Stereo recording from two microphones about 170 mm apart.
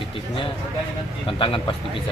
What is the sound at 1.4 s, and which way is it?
Speech, 30° left (ahead or behind).